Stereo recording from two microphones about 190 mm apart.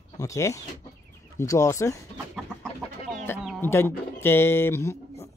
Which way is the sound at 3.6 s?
10° left (ahead or behind).